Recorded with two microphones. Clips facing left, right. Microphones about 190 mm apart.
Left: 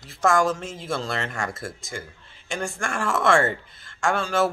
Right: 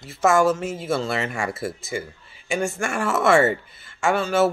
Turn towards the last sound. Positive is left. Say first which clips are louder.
# right 3 dB
turn(degrees=-5)  # may be behind; listen again after turning